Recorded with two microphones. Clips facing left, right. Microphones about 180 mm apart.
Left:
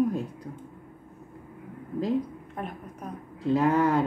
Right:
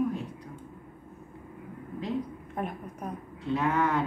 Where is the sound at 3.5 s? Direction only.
35° left (ahead or behind).